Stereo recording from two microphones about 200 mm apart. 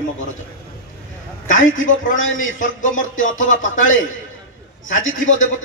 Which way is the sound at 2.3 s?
40° left (ahead or behind).